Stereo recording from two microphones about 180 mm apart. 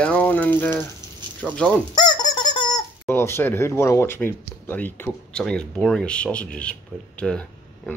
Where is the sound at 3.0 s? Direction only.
15° left (ahead or behind).